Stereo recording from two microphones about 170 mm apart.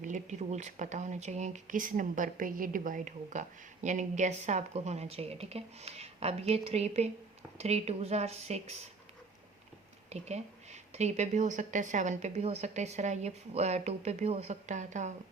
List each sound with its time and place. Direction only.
0.0 s speech: 45° right (ahead or behind)
10.1 s speech: 40° right (ahead or behind)